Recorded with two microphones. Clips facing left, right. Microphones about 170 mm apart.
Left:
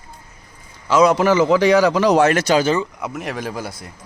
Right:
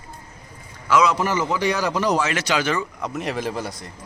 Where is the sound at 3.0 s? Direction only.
5° left (ahead or behind).